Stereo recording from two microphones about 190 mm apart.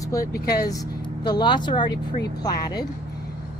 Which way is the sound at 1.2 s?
25° left (ahead or behind).